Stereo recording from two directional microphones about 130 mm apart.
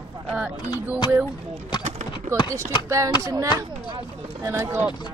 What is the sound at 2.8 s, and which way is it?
Speech, 20° right (ahead or behind).